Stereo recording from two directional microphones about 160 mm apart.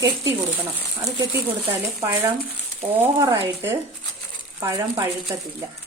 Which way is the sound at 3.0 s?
15° right (ahead or behind).